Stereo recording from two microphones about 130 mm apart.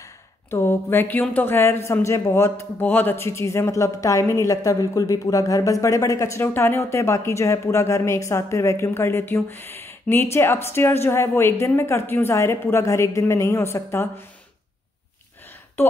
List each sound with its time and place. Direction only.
0.5 s speech: 20° left (ahead or behind)